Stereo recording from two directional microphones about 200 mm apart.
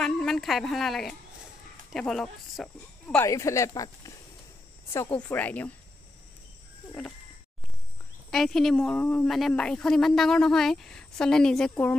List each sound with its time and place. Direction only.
0.0 s speech: centre (ahead or behind)
3.3 s speech: 15° left (ahead or behind)
8.3 s speech: centre (ahead or behind)